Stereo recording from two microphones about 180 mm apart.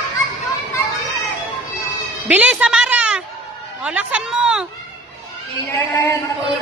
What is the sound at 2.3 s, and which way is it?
Music, 10° right (ahead or behind).